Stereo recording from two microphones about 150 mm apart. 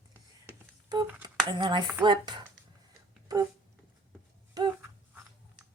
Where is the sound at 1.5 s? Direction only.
30° right (ahead or behind).